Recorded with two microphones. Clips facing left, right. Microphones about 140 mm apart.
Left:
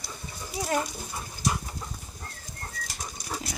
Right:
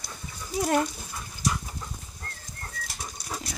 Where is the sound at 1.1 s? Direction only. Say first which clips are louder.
Even; 25° left (ahead or behind).